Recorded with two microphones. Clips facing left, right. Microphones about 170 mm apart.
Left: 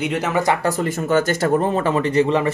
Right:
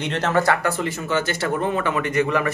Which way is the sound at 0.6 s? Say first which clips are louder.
Left 4 dB; 45° left (ahead or behind).